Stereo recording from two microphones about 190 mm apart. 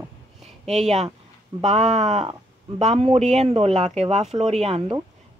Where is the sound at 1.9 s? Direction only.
35° right (ahead or behind).